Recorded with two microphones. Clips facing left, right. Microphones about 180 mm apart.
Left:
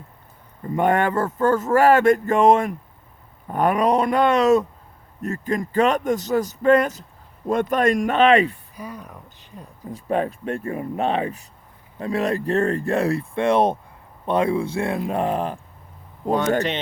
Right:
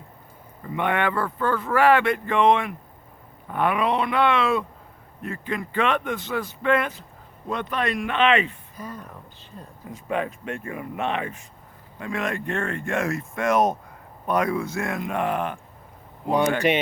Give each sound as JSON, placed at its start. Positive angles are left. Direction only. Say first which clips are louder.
{"t": 0.6, "sound": "speech", "louder": "left 5 dB", "side_deg": 40}
{"t": 8.7, "sound": "speech", "louder": "left 1 dB", "side_deg": 10}
{"t": 9.9, "sound": "speech", "louder": "left 4 dB", "side_deg": 35}